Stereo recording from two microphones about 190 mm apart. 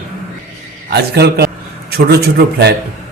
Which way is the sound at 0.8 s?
60° right (ahead or behind).